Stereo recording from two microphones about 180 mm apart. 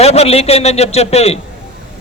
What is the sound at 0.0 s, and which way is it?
A man's voice, 35° left (ahead or behind).